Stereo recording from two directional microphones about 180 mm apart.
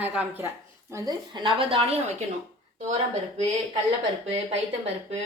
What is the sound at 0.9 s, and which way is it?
Speech, 20° right (ahead or behind).